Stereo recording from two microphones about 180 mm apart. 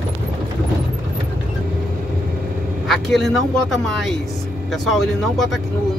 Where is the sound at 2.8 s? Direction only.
Centre (ahead or behind).